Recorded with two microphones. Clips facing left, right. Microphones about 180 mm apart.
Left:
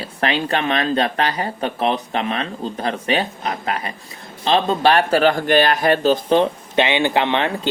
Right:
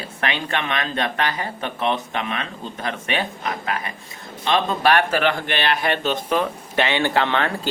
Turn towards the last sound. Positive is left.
turn(degrees=20)  # may be behind; listen again after turning